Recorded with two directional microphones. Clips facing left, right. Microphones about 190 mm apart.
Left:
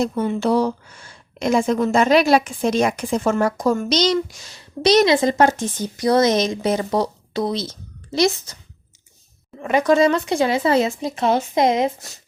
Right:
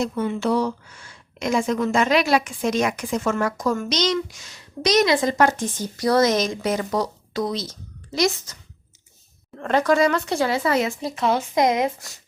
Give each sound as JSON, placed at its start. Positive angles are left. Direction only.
{"t": 0.0, "sound": "a woman's voice", "side_deg": 35}
{"t": 9.6, "sound": "a woman's voice", "side_deg": 10}
{"t": 9.8, "sound": "speech", "side_deg": 20}